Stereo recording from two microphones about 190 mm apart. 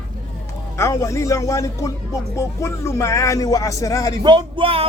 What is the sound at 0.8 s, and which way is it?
Speech, 15° left (ahead or behind).